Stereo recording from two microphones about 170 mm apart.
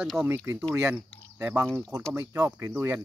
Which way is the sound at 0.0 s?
Centre (ahead or behind).